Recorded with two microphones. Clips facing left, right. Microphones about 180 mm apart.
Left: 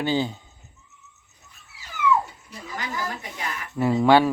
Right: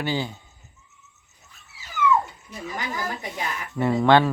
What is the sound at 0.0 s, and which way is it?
Speech, 20° left (ahead or behind).